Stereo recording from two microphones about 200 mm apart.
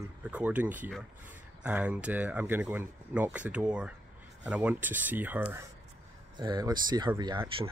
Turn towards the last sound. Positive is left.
turn(degrees=-15)  # may be behind; listen again after turning